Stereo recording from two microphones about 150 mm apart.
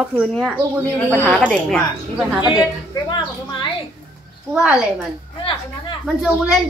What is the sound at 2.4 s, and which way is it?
A woman's voice, 25° left (ahead or behind).